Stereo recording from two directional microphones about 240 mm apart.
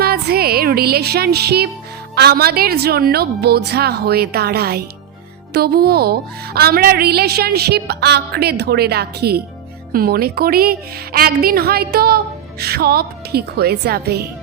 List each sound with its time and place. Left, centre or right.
0.0 s music: right
2.1 s a woman's voice: right